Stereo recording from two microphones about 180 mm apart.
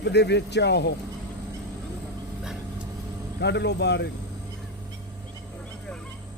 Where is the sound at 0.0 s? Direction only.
70° left (ahead or behind).